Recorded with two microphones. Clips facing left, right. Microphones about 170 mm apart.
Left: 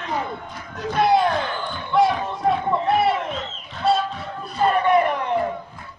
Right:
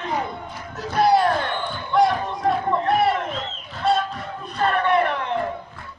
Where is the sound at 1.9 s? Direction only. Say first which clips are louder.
Even; centre (ahead or behind).